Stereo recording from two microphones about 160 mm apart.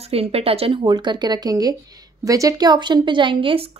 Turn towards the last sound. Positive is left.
turn(degrees=-35)  # may be behind; listen again after turning